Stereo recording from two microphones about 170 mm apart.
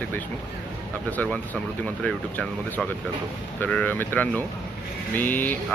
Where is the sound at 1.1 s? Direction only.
10° left (ahead or behind).